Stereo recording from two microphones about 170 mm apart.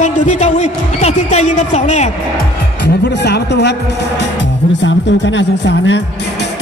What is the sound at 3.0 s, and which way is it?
Speech, 80° left.